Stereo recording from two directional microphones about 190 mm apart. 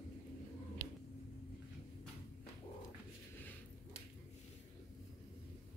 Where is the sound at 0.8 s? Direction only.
35° right (ahead or behind).